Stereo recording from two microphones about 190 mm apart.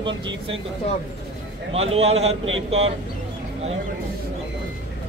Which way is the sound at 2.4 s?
90° right.